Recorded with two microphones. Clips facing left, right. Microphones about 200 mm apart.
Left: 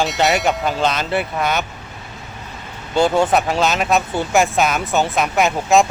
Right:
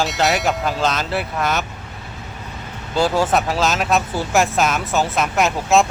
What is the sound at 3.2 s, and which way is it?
Speech, centre (ahead or behind).